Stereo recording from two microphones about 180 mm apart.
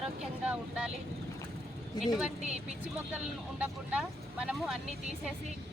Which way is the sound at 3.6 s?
5° right (ahead or behind).